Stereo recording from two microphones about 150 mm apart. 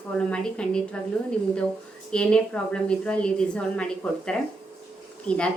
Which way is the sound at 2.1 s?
5° left (ahead or behind).